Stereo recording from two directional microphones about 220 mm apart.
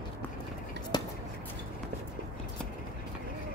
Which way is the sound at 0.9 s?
20° left (ahead or behind).